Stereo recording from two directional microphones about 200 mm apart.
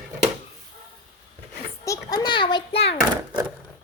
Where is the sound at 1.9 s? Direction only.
20° left (ahead or behind).